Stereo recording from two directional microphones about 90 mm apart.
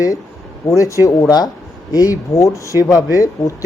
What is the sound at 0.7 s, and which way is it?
Speech, 35° left (ahead or behind).